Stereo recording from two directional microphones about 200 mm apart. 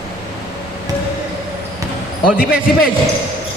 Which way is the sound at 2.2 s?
45° left (ahead or behind).